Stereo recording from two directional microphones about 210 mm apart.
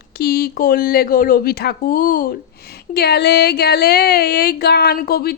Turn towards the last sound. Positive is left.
turn(degrees=45)  # may be behind; listen again after turning